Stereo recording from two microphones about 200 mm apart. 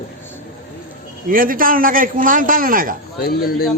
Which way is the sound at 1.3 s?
45° right (ahead or behind).